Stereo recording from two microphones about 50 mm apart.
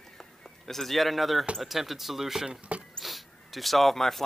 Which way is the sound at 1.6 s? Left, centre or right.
Centre.